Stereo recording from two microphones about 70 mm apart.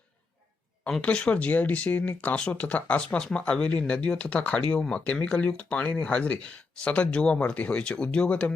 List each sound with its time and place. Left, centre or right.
1.0 s speech: centre